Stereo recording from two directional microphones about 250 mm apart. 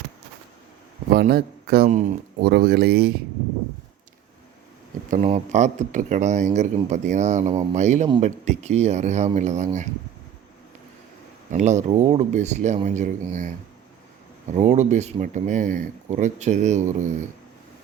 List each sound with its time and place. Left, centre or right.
1.1 s speech: right
2.5 s speech: right
5.1 s speech: right
11.5 s speech: right
14.5 s speech: right